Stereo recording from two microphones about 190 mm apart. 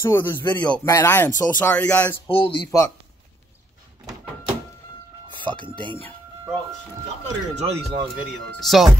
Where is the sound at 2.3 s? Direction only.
30° left (ahead or behind).